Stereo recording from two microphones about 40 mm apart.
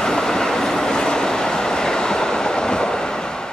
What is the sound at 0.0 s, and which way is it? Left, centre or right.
Train, centre.